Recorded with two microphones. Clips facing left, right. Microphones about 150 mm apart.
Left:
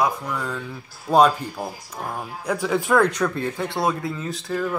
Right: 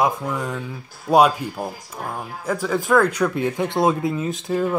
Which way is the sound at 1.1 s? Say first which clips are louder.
Right 1 dB; 10° right (ahead or behind).